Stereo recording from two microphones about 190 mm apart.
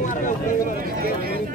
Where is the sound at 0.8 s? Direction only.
50° right (ahead or behind).